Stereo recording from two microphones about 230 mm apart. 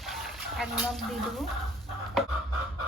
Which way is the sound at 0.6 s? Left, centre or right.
Centre.